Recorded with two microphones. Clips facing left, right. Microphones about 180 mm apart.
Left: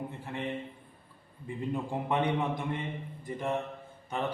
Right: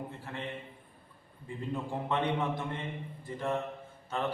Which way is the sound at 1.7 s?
15° left (ahead or behind).